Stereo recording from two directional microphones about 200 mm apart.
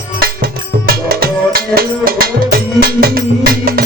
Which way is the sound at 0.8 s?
50° right (ahead or behind).